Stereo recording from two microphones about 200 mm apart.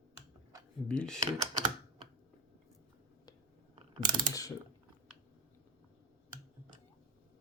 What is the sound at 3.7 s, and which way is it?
Ratchet, 20° right (ahead or behind).